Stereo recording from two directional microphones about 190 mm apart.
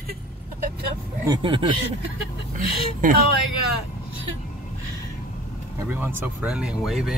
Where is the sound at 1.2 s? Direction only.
25° right (ahead or behind).